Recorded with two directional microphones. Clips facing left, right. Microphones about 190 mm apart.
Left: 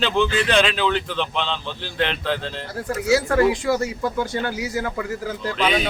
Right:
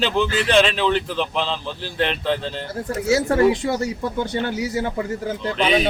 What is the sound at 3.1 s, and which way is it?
A man's voice, 25° right (ahead or behind).